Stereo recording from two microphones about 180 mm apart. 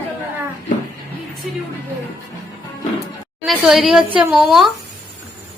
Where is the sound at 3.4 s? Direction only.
Centre (ahead or behind).